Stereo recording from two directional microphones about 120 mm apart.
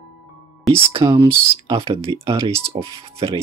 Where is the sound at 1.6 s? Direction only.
50° right (ahead or behind).